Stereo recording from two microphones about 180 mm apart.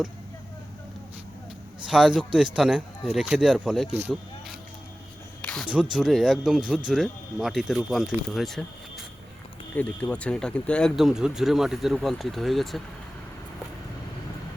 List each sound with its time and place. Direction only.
1.9 s speech: centre (ahead or behind)
5.4 s a sound: 5° left (ahead or behind)
5.7 s speech: 5° right (ahead or behind)